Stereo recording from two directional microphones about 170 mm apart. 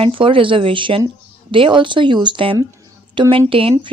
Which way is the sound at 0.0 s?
30° right (ahead or behind).